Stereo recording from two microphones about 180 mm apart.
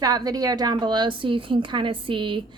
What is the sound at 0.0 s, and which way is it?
A woman's voice, 20° right (ahead or behind).